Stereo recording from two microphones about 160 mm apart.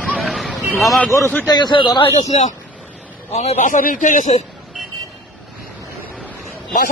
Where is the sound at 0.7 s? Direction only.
Centre (ahead or behind).